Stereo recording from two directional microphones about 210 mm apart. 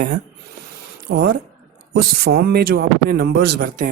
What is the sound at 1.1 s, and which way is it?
Speech, 45° right (ahead or behind).